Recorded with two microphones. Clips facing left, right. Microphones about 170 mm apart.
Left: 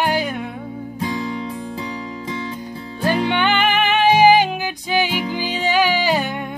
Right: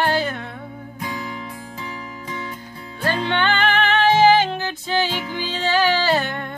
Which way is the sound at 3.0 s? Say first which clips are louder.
Left 3 dB; 15° left (ahead or behind).